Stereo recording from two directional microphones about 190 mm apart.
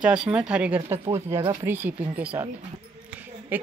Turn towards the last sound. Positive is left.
turn(degrees=-10)  # may be behind; listen again after turning